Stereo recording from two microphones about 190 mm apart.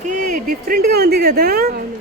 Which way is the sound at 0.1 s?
45° right (ahead or behind).